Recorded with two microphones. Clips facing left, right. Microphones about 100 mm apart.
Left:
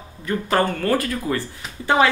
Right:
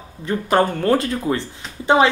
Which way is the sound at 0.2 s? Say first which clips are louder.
Right 3 dB; 20° right (ahead or behind).